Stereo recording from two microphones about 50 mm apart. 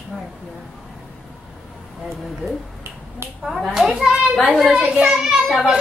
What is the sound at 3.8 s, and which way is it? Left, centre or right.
A child's voice, centre.